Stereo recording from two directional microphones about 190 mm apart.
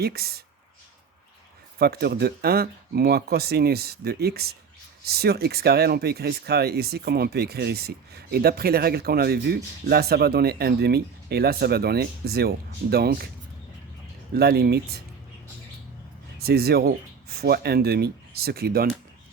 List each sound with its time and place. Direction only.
0.0 s speech: 55° right (ahead or behind)
1.8 s speech: 55° right (ahead or behind)
14.3 s speech: 55° right (ahead or behind)
16.4 s speech: 55° right (ahead or behind)